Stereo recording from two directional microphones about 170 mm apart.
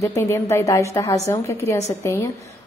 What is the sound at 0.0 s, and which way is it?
A woman's voice, 15° left (ahead or behind).